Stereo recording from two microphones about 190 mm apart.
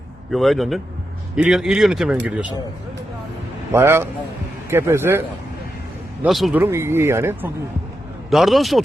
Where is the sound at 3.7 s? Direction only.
15° right (ahead or behind).